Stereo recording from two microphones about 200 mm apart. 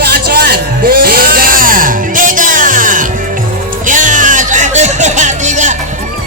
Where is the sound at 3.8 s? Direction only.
40° right (ahead or behind).